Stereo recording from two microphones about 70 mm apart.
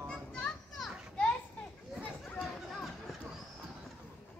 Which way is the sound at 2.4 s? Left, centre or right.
Centre.